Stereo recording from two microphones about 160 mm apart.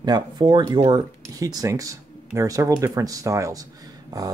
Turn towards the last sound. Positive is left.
turn(degrees=-25)  # may be behind; listen again after turning